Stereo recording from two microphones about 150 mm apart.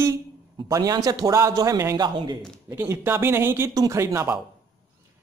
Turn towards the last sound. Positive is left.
turn(degrees=-20)  # may be behind; listen again after turning